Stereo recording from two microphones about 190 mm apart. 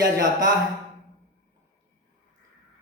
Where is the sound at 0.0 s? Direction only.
20° right (ahead or behind).